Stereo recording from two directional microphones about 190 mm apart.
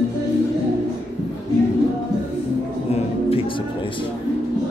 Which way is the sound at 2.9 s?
30° left (ahead or behind).